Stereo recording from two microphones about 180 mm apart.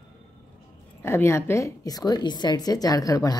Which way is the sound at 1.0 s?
15° left (ahead or behind).